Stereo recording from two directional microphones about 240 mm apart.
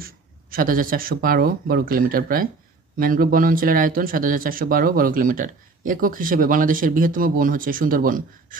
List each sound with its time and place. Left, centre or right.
0.0 s speech: right